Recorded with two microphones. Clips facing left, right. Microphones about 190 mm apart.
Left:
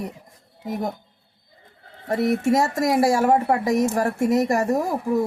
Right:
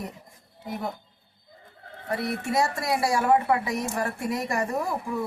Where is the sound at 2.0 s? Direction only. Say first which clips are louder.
Left 9 dB; 45° left (ahead or behind).